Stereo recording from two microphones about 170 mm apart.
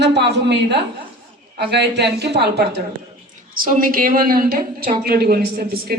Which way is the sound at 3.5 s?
55° right (ahead or behind).